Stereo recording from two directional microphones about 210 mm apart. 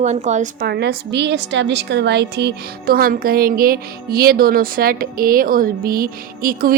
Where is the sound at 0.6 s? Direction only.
50° right (ahead or behind).